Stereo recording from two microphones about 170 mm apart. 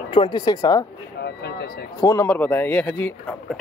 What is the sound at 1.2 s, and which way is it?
Speech, 80° left.